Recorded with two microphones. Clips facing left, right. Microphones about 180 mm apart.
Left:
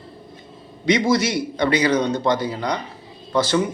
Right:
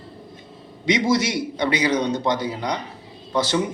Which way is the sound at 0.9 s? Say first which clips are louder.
Left 2 dB; 20° right (ahead or behind).